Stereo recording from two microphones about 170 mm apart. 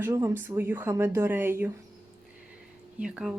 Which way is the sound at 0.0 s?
15° right (ahead or behind).